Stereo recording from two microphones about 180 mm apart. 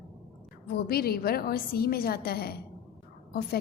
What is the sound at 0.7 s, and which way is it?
A woman's voice, 60° left (ahead or behind).